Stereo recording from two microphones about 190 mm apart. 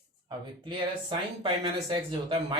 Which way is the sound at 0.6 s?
25° right (ahead or behind).